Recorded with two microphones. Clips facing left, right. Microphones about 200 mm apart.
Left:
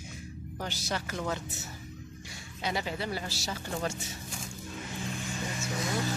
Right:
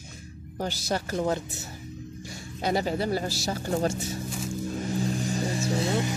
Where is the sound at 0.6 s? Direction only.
35° right (ahead or behind).